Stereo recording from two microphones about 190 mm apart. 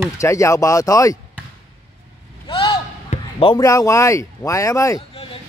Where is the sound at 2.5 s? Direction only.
25° left (ahead or behind).